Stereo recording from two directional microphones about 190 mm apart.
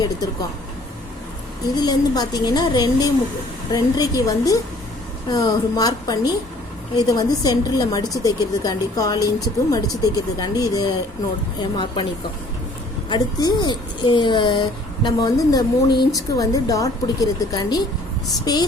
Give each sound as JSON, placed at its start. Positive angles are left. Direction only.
{"t": 1.7, "sound": "a woman's voice", "side_deg": 20}
{"t": 13.1, "sound": "a woman's voice", "side_deg": 20}